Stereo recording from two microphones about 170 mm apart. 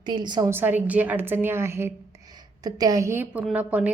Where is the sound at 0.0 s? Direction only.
25° right (ahead or behind).